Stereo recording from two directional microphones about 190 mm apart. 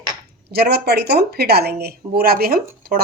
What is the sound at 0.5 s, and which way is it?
A woman's voice, 55° right (ahead or behind).